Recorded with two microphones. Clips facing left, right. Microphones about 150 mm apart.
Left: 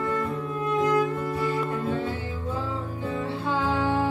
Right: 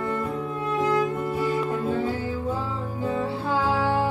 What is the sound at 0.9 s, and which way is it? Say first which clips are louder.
Music: even; 25° right (ahead or behind).